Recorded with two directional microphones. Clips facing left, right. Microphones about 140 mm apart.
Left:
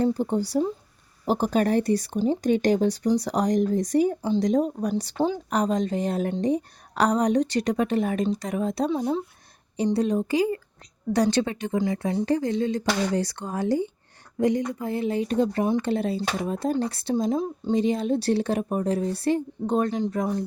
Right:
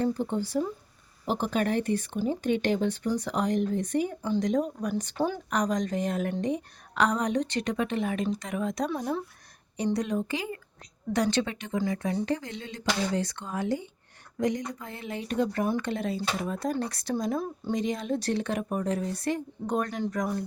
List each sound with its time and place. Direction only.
0.0 s a woman's voice: 35° left (ahead or behind)
5.1 s speech: 20° left (ahead or behind)
5.5 s a woman's voice: 30° left (ahead or behind)
8.9 s a woman's voice: 20° left (ahead or behind)